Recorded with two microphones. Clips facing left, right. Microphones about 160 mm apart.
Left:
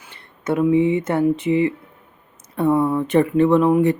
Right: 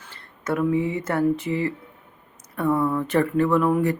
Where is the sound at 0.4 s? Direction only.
20° left (ahead or behind).